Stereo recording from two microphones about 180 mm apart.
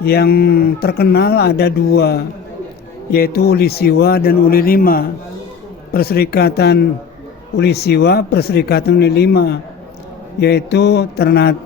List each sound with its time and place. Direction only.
0.0 s speech: 60° left (ahead or behind)